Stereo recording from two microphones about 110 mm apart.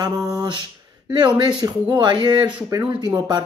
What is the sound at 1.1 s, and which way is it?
Speech, 45° right (ahead or behind).